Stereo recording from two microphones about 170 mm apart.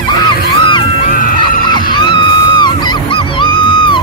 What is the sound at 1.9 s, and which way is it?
Music, 25° left (ahead or behind).